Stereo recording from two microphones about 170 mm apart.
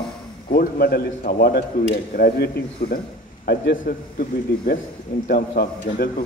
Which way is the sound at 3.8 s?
50° left (ahead or behind).